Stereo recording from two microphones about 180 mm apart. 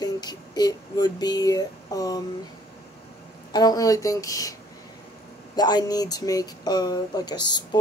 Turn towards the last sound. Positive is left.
turn(degrees=25)  # may be behind; listen again after turning